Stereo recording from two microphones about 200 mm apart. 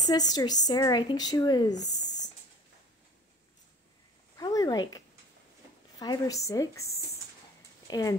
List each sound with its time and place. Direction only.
0.0 s a woman's voice: 20° left (ahead or behind)
4.4 s a sound: 20° left (ahead or behind)
5.9 s a woman's voice: 20° left (ahead or behind)